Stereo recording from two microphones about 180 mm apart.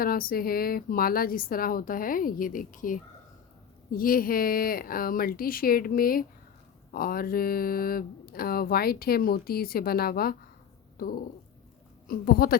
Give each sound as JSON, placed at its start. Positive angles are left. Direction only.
{"t": 0.0, "sound": "a woman's voice", "side_deg": 55}